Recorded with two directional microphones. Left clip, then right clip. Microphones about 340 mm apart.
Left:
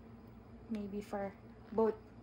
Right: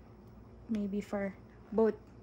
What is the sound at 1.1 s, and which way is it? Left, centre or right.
Speech, right.